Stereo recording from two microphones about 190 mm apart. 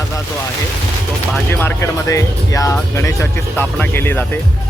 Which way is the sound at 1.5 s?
10° left (ahead or behind).